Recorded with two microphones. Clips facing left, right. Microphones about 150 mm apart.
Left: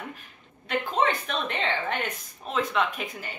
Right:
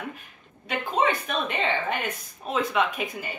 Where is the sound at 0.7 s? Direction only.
5° right (ahead or behind).